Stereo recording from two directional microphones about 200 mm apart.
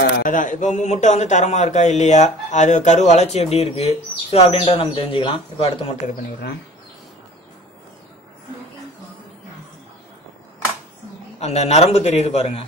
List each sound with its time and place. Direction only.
0.2 s a man's voice: 40° left (ahead or behind)
11.3 s a man's voice: 30° left (ahead or behind)